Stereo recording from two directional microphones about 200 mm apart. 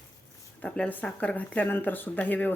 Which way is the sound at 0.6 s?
5° left (ahead or behind).